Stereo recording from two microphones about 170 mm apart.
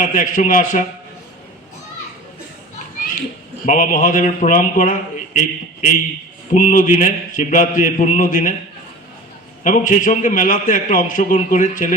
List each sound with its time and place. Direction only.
0.0 s a man's voice: 50° left (ahead or behind)
3.7 s a man's voice: 50° left (ahead or behind)
9.6 s a man's voice: 50° left (ahead or behind)